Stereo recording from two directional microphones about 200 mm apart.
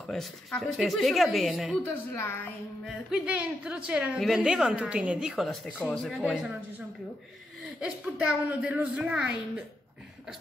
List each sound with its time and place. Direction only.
0.0 s a woman's voice: centre (ahead or behind)
3.1 s a woman's voice: 5° right (ahead or behind)
7.8 s a woman's voice: 5° right (ahead or behind)